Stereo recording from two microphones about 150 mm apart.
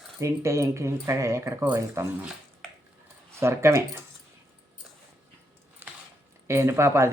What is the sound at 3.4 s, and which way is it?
Speech, 20° right (ahead or behind).